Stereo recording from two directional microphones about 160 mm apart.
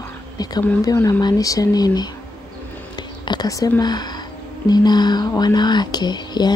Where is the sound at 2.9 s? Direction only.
25° left (ahead or behind).